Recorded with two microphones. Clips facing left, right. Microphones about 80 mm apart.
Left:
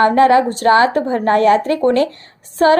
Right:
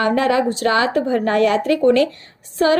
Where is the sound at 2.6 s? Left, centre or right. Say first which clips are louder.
Left 4 dB; left.